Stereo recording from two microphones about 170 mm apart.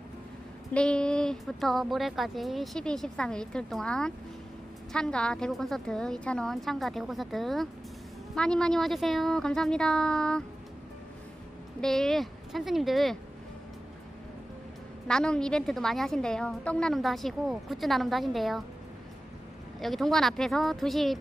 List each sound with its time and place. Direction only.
0.7 s a woman's voice: 5° left (ahead or behind)
11.8 s a woman's voice: centre (ahead or behind)
15.0 s a woman's voice: 5° left (ahead or behind)
19.8 s a woman's voice: centre (ahead or behind)